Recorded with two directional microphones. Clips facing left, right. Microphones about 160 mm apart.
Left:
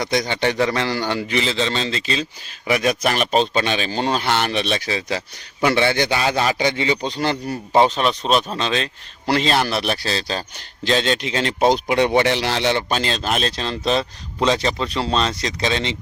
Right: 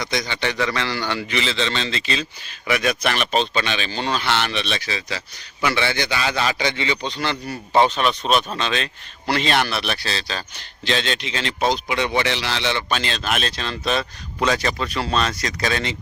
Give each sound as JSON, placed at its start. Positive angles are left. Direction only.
{"t": 0.0, "sound": "a man's voice", "side_deg": 50}